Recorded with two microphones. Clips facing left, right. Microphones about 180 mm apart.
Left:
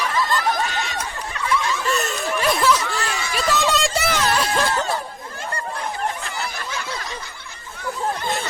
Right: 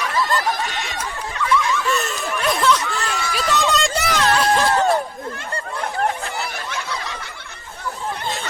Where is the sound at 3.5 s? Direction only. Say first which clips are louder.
Even; centre (ahead or behind).